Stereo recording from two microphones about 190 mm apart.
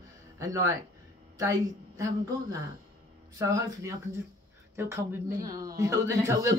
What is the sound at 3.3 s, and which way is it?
Speech, 15° right (ahead or behind).